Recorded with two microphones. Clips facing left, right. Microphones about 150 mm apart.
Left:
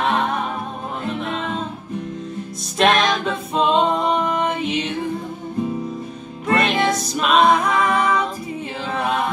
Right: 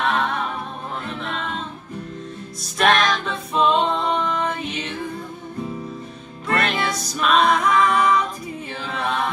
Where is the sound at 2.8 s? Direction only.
25° left (ahead or behind).